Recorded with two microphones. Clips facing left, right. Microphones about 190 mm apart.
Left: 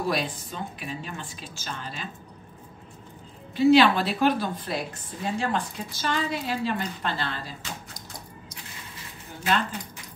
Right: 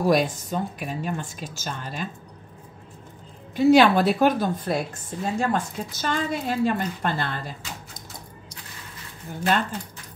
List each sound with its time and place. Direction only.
0.0 s a woman's voice: 45° right (ahead or behind)
3.5 s a woman's voice: 45° right (ahead or behind)